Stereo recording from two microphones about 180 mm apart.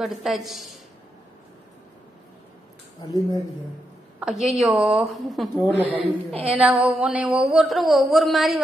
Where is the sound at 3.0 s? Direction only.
20° left (ahead or behind).